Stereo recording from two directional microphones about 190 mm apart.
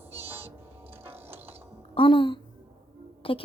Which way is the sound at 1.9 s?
25° left (ahead or behind).